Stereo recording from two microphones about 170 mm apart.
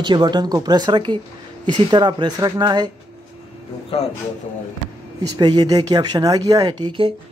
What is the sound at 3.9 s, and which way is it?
Speech, 35° left (ahead or behind).